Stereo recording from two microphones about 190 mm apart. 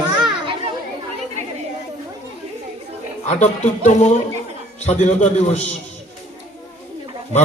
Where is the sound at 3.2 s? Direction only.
35° left (ahead or behind).